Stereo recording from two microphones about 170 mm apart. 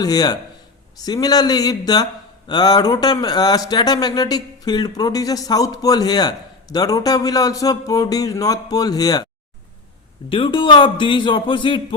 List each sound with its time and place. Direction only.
0.0 s speech: 20° left (ahead or behind)
10.2 s speech: 30° left (ahead or behind)